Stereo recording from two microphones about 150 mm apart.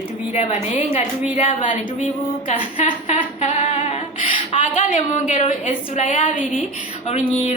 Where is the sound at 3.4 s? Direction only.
50° left (ahead or behind).